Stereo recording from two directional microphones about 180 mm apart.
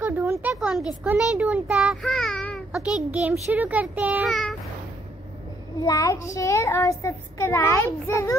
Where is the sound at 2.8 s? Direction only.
5° right (ahead or behind).